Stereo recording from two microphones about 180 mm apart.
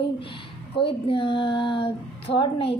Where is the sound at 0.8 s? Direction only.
30° left (ahead or behind).